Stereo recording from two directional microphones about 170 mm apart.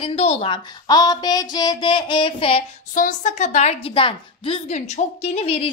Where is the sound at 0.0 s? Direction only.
35° left (ahead or behind).